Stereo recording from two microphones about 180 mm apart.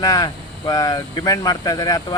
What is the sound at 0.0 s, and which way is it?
Speech, 20° left (ahead or behind).